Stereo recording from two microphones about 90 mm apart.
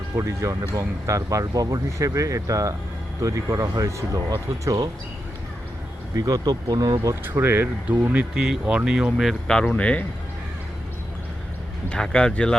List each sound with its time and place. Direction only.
0.2 s speech: 35° right (ahead or behind)
6.1 s speech: 40° right (ahead or behind)
7.3 s speech: 25° right (ahead or behind); by 9.3 s 10° right (ahead or behind)
9.6 s speech: 15° left (ahead or behind)
11.9 s speech: 10° left (ahead or behind)